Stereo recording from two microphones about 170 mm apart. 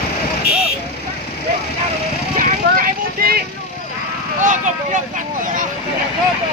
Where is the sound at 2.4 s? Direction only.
55° right (ahead or behind).